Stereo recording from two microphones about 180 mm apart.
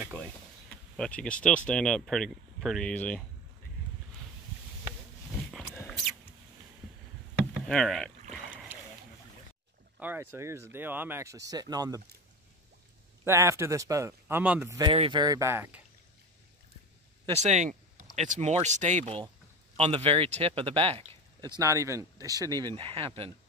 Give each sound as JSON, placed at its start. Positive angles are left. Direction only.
{"t": 0.9, "sound": "speech", "side_deg": 5}
{"t": 5.9, "sound": "mouse", "side_deg": 0}
{"t": 7.6, "sound": "rowboat", "side_deg": 0}
{"t": 9.9, "sound": "speech", "side_deg": -10}
{"t": 13.2, "sound": "speech", "side_deg": -15}
{"t": 14.9, "sound": "speech", "side_deg": -30}
{"t": 17.3, "sound": "speech", "side_deg": -40}